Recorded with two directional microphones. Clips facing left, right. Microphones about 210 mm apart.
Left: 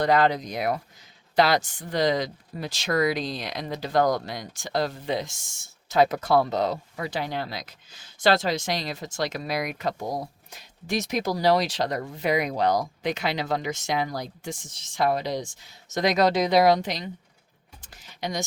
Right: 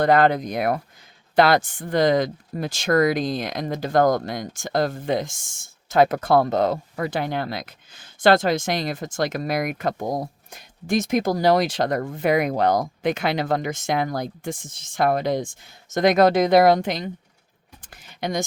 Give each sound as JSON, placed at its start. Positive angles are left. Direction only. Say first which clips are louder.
{"t": 0.0, "sound": "speech", "louder": "right 4 dB", "side_deg": -55}